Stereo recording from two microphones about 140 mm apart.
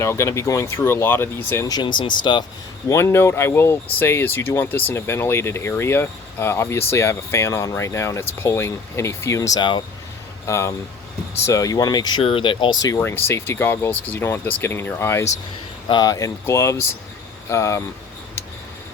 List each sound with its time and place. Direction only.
0.0 s speech: 20° left (ahead or behind)
2.9 s speech: 20° left (ahead or behind)
9.6 s speech: 35° left (ahead or behind)
10.4 s speech: 20° left (ahead or behind)
12.2 s speech: 40° left (ahead or behind)
13.0 s speech: 15° left (ahead or behind)